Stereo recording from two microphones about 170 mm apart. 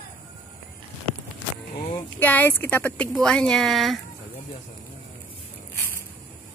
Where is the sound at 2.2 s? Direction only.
10° left (ahead or behind).